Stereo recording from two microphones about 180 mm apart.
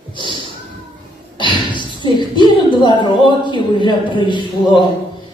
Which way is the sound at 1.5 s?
25° left (ahead or behind).